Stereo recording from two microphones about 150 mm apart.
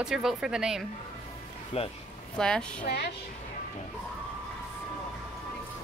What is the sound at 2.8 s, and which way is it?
Speech, 90° left.